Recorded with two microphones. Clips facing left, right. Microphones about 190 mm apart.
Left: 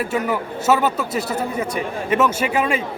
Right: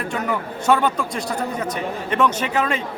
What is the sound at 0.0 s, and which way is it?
A man's voice, 5° left (ahead or behind).